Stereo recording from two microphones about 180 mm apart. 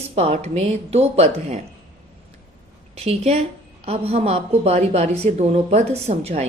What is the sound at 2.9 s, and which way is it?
A woman's voice, 35° right (ahead or behind).